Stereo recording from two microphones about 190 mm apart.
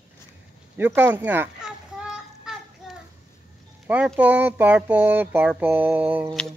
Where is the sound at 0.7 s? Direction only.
10° right (ahead or behind).